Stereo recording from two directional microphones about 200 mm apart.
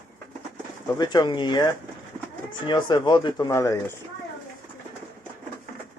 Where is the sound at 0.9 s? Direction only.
20° left (ahead or behind).